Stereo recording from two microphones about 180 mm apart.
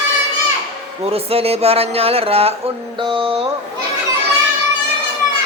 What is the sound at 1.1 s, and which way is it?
A man's voice, 35° right (ahead or behind).